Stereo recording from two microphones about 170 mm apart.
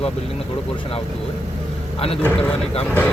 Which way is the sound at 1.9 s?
35° left (ahead or behind).